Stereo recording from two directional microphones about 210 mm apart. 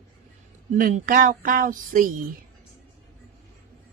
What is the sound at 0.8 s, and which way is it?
Speech, 40° right (ahead or behind).